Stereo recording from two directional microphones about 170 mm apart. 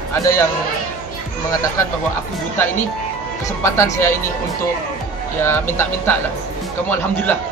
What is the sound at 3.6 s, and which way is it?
Speech, 15° left (ahead or behind).